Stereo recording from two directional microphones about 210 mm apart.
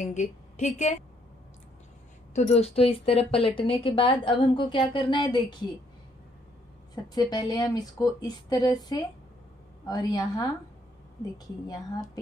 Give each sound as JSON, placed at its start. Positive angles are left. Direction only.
{"t": 0.0, "sound": "a woman's voice", "side_deg": 35}
{"t": 2.3, "sound": "a woman's voice", "side_deg": 35}
{"t": 7.2, "sound": "speech", "side_deg": 20}